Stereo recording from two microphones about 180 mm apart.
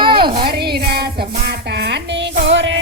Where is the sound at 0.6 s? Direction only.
60° right (ahead or behind); by 2.8 s 85° right.